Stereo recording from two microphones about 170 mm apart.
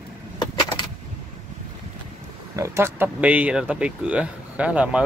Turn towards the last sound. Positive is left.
turn(degrees=-5)  # may be behind; listen again after turning